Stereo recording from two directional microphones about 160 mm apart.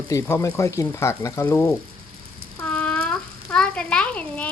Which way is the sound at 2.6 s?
5° left (ahead or behind).